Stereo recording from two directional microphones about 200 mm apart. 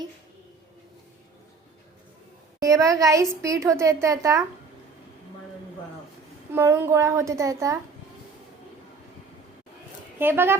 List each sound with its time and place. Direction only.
2.6 s a woman's voice: 15° right (ahead or behind)
6.5 s a woman's voice: 10° right (ahead or behind)
10.2 s a woman's voice: 10° right (ahead or behind)